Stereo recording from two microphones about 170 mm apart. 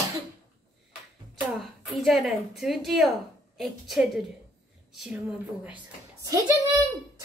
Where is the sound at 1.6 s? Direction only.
Centre (ahead or behind).